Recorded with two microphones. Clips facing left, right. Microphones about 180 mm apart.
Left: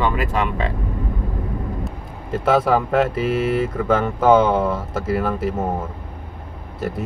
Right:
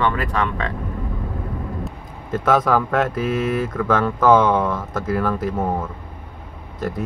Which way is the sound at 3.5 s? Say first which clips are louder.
Left 1 dB; 25° left (ahead or behind).